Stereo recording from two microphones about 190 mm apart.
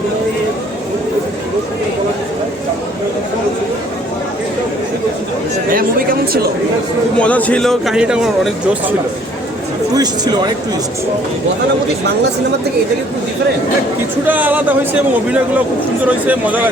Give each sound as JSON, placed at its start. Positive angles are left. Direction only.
{"t": 5.7, "sound": "speech", "side_deg": -50}
{"t": 7.2, "sound": "speech", "side_deg": 5}
{"t": 9.9, "sound": "speech", "side_deg": -20}
{"t": 14.3, "sound": "speech", "side_deg": -10}